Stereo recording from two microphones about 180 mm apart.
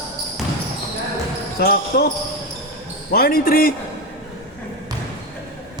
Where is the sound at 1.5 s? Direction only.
55° left (ahead or behind).